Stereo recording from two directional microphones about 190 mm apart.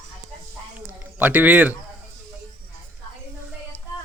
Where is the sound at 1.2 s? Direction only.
10° right (ahead or behind).